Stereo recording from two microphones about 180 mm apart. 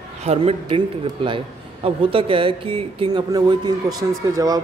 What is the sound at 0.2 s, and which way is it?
A man's voice, 35° right (ahead or behind).